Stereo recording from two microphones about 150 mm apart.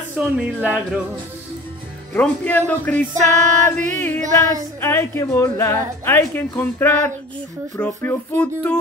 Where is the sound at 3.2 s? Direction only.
55° right (ahead or behind).